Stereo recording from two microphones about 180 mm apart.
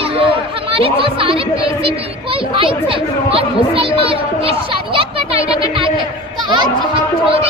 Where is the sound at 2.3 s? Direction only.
30° right (ahead or behind).